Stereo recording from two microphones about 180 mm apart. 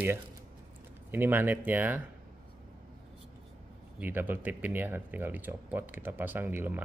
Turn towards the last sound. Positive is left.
turn(degrees=-10)  # may be behind; listen again after turning